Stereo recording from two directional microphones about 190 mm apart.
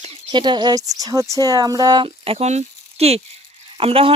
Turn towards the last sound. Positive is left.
turn(degrees=-30)  # may be behind; listen again after turning